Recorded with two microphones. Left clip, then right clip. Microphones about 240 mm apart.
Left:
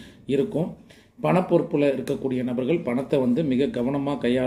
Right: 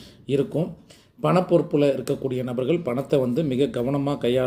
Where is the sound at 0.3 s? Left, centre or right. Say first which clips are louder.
Even; right.